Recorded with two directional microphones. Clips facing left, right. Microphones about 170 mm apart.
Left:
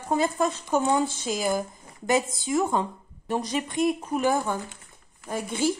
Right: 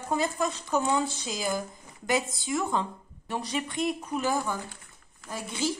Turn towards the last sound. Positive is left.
turn(degrees=50)  # may be behind; listen again after turning